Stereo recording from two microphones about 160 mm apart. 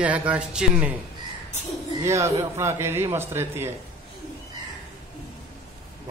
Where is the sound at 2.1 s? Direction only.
20° right (ahead or behind).